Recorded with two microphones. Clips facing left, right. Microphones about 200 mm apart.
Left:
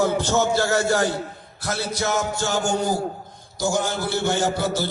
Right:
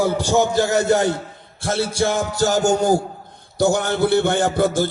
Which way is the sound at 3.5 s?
60° right (ahead or behind).